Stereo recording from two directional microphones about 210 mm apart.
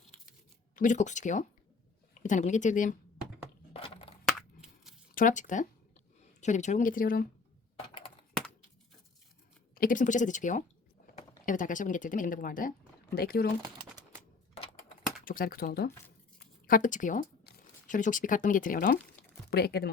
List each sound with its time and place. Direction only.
0.8 s speech: 35° left (ahead or behind)
3.7 s a sound: 30° left (ahead or behind)
4.4 s a sound: centre (ahead or behind)
5.1 s speech: 35° left (ahead or behind)
9.7 s speech: 40° left (ahead or behind)
15.2 s speech: 40° left (ahead or behind)